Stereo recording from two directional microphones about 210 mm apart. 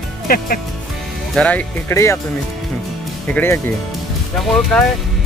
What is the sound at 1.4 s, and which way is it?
Speech, 5° left (ahead or behind).